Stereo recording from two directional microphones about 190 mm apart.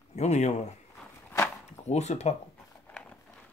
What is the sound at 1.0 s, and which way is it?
Walk, 10° left (ahead or behind).